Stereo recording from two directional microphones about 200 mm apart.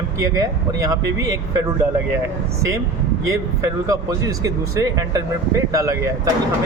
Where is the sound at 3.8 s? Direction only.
15° right (ahead or behind).